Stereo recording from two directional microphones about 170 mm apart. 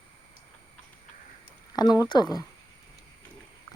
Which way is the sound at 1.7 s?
25° left (ahead or behind).